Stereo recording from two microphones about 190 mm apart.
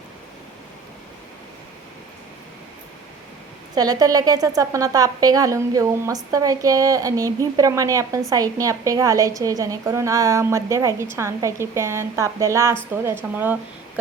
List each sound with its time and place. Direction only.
3.8 s a woman's voice: 20° right (ahead or behind)